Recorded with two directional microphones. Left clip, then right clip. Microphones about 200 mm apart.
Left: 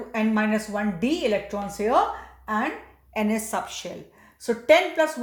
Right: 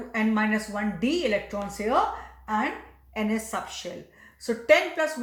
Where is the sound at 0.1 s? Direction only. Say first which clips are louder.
Left 1 dB; 35° left (ahead or behind).